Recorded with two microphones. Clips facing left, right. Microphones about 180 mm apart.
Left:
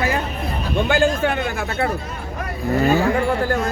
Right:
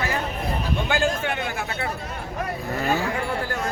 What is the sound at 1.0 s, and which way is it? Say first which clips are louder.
Speech: left 6 dB; 50° left (ahead or behind).